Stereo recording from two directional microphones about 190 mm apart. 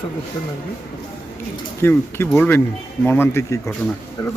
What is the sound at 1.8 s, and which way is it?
A man's voice, 10° left (ahead or behind).